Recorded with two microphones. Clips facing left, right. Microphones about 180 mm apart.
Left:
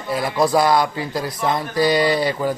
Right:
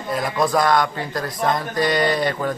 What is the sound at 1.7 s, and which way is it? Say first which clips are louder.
Speech: left 5 dB; 30° left (ahead or behind).